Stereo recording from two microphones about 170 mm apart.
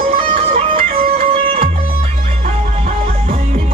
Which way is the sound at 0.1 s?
35° right (ahead or behind).